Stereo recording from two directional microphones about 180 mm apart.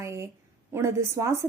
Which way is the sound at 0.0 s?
15° right (ahead or behind).